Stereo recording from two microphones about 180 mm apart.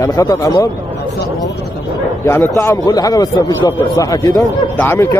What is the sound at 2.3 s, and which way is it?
A man's voice, 15° left (ahead or behind).